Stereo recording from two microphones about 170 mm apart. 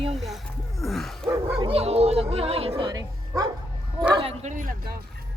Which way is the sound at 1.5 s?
35° right (ahead or behind).